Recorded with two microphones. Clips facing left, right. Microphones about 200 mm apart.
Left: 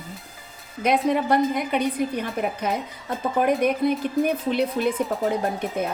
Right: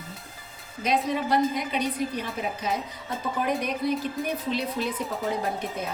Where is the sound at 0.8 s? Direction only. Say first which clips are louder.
Left 5 dB; 55° left (ahead or behind).